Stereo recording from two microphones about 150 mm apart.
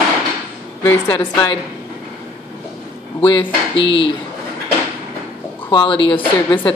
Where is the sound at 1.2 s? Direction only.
30° left (ahead or behind).